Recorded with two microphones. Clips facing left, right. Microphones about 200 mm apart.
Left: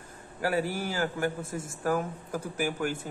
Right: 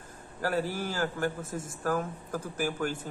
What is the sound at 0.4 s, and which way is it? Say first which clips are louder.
A man's voice: left 1 dB; 10° left (ahead or behind).